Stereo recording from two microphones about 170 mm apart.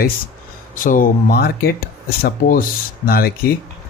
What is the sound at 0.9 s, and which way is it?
A man's voice, 60° left (ahead or behind).